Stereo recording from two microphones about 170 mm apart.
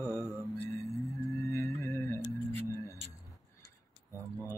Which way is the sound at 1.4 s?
15° left (ahead or behind).